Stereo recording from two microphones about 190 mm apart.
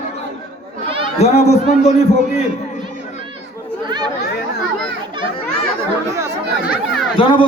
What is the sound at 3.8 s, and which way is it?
Chatter, 20° right (ahead or behind).